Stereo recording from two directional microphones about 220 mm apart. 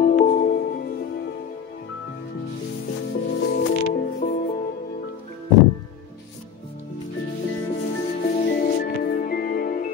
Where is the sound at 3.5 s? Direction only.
40° left (ahead or behind).